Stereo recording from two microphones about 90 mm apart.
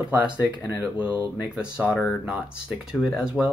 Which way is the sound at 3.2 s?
10° right (ahead or behind).